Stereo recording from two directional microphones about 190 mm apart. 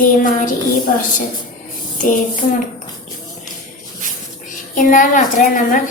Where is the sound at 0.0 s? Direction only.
45° left (ahead or behind).